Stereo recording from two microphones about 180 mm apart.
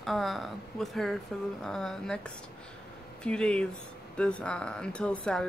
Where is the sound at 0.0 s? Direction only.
Centre (ahead or behind).